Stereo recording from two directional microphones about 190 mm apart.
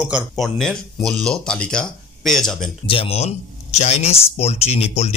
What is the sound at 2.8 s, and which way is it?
Speech, 30° left (ahead or behind).